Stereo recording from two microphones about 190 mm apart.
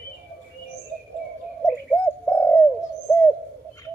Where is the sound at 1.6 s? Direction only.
5° left (ahead or behind).